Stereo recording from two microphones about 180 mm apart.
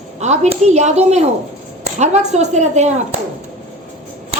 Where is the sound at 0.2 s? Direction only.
35° right (ahead or behind).